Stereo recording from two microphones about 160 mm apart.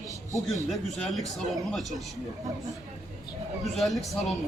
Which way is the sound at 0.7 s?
Centre (ahead or behind).